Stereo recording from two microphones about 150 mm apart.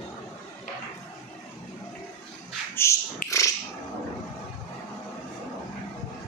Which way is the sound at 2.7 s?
20° left (ahead or behind).